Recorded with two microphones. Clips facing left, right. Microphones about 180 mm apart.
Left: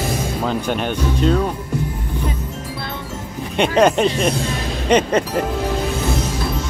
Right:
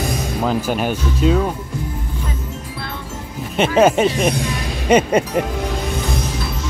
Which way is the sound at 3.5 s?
5° right (ahead or behind).